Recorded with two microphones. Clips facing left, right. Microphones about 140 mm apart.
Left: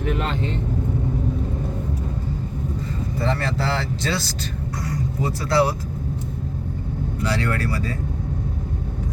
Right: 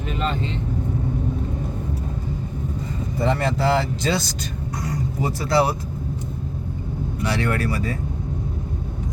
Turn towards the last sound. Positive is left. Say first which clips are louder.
# right 1 dB
turn(degrees=-20)  # may be behind; listen again after turning